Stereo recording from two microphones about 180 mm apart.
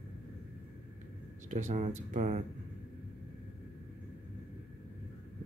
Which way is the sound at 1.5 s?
40° right (ahead or behind).